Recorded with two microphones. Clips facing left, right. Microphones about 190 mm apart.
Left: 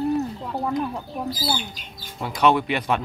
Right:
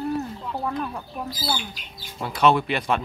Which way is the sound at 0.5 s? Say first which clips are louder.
Left 3 dB; 20° left (ahead or behind).